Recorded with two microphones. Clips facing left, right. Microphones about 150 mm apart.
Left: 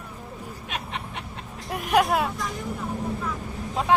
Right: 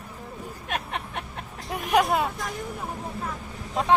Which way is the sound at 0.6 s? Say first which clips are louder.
Right 3 dB; 50° right (ahead or behind).